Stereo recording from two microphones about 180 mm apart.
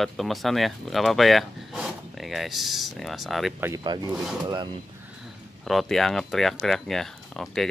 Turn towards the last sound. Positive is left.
turn(degrees=0)  # may be behind; listen again after turning